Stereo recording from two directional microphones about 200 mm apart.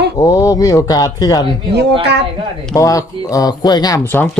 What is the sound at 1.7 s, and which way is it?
Speech, 55° right (ahead or behind).